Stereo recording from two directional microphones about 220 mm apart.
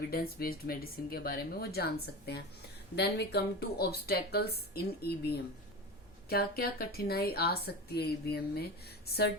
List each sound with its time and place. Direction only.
0.1 s speech: 45° left (ahead or behind)